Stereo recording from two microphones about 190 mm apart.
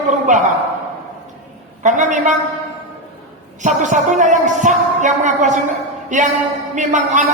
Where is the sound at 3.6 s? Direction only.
40° right (ahead or behind).